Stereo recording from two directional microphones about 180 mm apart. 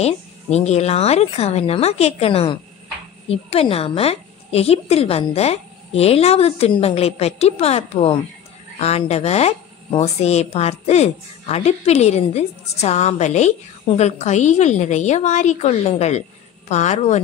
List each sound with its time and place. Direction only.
0.0 s speech: 35° left (ahead or behind)